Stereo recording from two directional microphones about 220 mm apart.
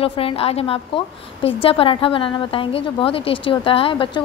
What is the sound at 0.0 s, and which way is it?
A woman's voice, 25° left (ahead or behind).